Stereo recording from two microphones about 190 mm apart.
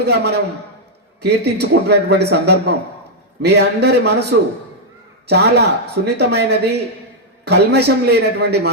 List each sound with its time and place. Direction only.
0.0 s a man's voice: 60° right (ahead or behind)